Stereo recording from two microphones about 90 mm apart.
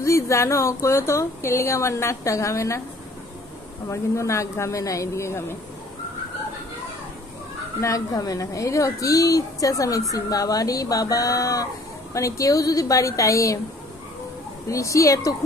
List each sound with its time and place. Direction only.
0.0 s speech: 35° left (ahead or behind)
3.9 s speech: 35° left (ahead or behind)
7.8 s speech: 40° left (ahead or behind)
14.7 s speech: 35° left (ahead or behind)